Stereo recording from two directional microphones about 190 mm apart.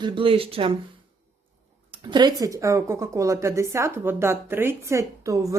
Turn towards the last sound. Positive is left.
turn(degrees=-15)  # may be behind; listen again after turning